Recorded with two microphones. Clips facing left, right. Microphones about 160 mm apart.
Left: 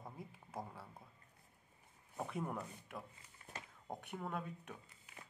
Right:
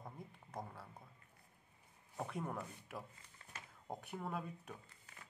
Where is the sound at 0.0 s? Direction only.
5° left (ahead or behind).